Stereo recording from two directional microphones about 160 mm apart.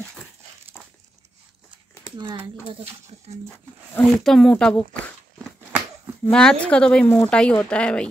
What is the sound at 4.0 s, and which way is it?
Speech, centre (ahead or behind).